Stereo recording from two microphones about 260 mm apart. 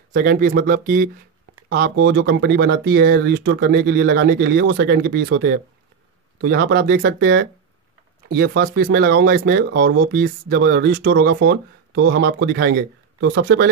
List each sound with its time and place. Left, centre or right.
0.1 s speech: right